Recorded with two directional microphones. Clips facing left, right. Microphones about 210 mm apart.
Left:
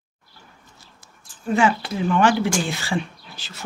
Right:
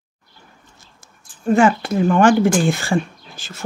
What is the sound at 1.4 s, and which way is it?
Speech, 45° right (ahead or behind).